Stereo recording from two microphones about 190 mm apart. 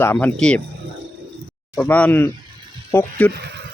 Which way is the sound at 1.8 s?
5° left (ahead or behind).